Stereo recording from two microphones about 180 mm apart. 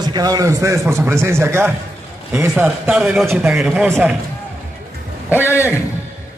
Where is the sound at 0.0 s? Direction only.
20° right (ahead or behind).